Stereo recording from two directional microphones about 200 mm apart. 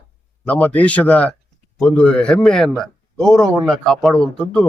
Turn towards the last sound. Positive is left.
turn(degrees=5)  # may be behind; listen again after turning